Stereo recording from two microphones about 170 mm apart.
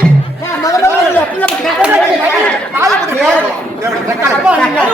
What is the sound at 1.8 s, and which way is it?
Chatter, 10° right (ahead or behind).